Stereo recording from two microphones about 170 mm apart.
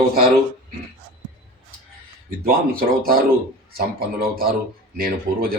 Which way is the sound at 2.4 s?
60° right (ahead or behind).